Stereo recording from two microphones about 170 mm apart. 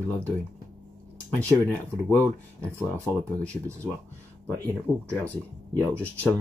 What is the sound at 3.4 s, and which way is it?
Speech, 5° left (ahead or behind).